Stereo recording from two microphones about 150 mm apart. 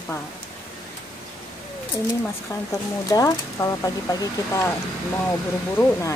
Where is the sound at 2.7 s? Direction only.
25° left (ahead or behind).